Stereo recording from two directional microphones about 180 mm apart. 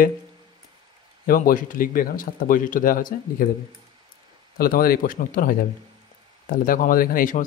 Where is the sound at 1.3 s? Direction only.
50° left (ahead or behind).